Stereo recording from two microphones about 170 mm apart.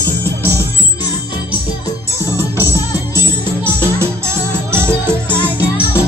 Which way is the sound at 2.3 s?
20° left (ahead or behind).